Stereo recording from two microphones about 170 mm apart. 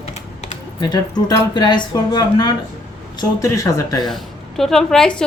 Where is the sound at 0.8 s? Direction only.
25° left (ahead or behind).